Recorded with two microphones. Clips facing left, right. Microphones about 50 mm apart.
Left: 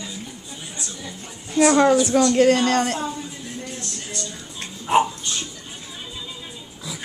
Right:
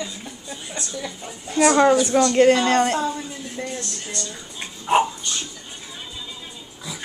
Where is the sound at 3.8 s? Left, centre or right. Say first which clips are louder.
Right 1 dB; centre.